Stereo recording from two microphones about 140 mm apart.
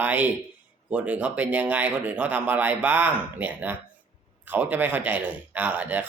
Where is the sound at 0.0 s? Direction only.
10° right (ahead or behind).